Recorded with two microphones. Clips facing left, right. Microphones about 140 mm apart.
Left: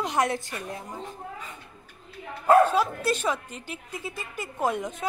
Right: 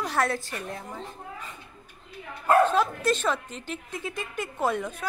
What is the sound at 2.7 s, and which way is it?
A woman's voice, 10° left (ahead or behind).